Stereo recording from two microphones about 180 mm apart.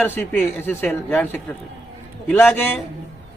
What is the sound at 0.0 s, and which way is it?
A man's voice, 10° left (ahead or behind).